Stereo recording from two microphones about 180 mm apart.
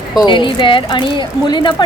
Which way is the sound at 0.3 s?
25° left (ahead or behind).